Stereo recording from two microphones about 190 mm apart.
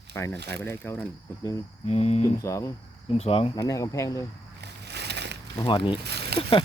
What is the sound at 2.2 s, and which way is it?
Speech, 15° left (ahead or behind).